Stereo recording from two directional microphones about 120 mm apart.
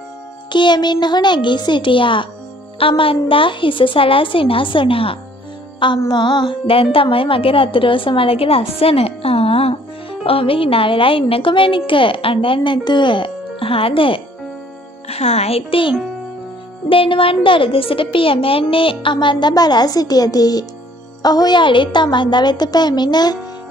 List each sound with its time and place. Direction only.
0.5 s a woman's voice: 40° left (ahead or behind)
15.0 s a child's voice: 60° left (ahead or behind)
16.9 s a woman's voice: 50° left (ahead or behind)